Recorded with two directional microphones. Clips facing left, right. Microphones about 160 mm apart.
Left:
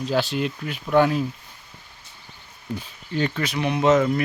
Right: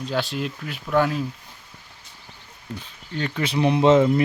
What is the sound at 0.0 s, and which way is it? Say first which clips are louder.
Speech: left 3 dB; centre (ahead or behind).